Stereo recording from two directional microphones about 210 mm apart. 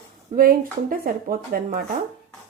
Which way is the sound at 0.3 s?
45° right (ahead or behind).